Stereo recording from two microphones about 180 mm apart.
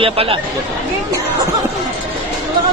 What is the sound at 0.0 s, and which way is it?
Speech, 30° right (ahead or behind).